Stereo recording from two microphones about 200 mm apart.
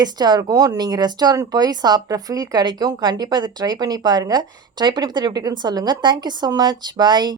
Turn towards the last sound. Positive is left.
turn(degrees=-20)  # may be behind; listen again after turning